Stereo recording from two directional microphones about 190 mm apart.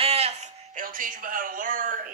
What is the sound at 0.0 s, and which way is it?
Speech, 30° right (ahead or behind).